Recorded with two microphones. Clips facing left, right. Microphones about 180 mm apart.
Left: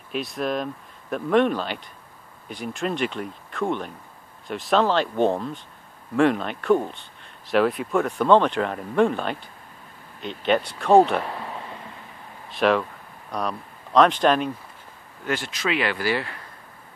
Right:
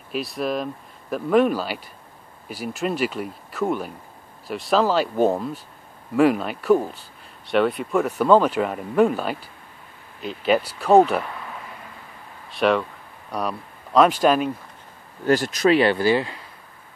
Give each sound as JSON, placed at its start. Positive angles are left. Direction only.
{"t": 0.1, "sound": "speech", "side_deg": 0}
{"t": 12.4, "sound": "speech", "side_deg": 0}
{"t": 15.2, "sound": "speech", "side_deg": -40}